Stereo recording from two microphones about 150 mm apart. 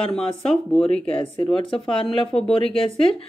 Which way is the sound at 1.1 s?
35° left (ahead or behind).